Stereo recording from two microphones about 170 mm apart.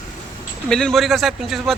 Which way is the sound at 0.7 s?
5° left (ahead or behind).